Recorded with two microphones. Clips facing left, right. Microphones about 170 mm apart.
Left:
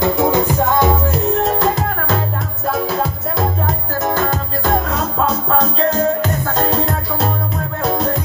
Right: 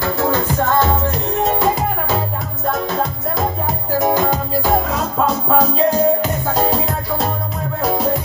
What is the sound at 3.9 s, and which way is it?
Music, 15° right (ahead or behind).